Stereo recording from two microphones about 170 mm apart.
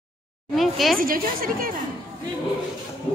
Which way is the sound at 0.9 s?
55° right (ahead or behind).